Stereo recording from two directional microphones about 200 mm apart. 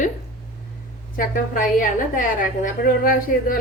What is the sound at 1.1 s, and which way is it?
A woman's voice, 45° left (ahead or behind).